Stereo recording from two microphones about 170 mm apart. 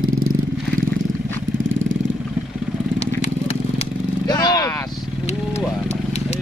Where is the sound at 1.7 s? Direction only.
90° right.